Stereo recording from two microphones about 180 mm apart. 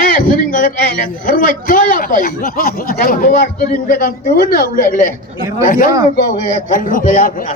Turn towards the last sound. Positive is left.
turn(degrees=50)  # may be behind; listen again after turning